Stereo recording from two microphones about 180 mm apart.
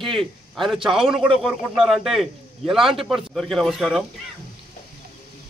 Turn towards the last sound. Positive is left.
turn(degrees=0)  # may be behind; listen again after turning